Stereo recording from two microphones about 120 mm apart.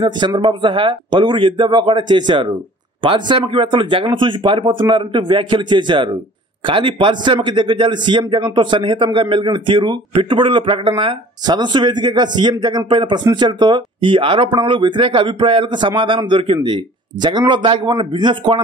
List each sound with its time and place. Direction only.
0.4 s a man's voice: 45° right (ahead or behind)